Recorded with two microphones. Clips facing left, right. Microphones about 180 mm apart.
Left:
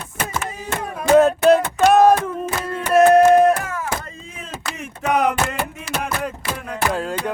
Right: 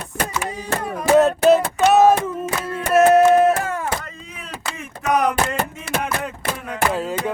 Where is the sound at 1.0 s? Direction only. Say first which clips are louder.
Left 1 dB; centre (ahead or behind).